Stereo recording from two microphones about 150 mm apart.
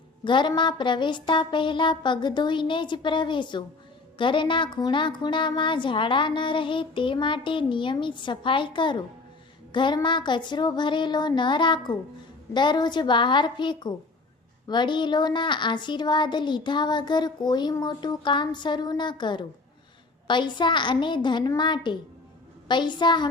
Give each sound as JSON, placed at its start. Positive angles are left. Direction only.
{"t": 0.3, "sound": "a woman's voice", "side_deg": 30}